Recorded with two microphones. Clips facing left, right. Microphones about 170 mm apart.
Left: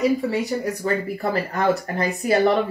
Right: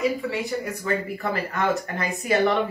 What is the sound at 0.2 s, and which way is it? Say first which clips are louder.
Speech: left 4 dB; 40° left (ahead or behind).